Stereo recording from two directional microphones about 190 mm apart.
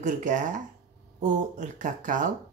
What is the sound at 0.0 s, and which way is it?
Speech, 40° right (ahead or behind).